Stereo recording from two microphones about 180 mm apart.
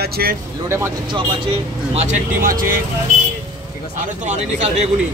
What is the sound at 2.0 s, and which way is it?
Speech, 45° right (ahead or behind).